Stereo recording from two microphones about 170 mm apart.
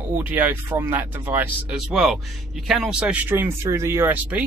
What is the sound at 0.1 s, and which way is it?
Speech, 10° right (ahead or behind).